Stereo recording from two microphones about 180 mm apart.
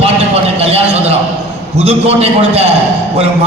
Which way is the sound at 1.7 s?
35° right (ahead or behind).